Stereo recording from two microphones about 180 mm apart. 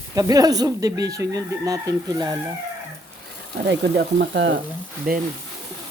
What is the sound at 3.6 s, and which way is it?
Speech, 70° right (ahead or behind).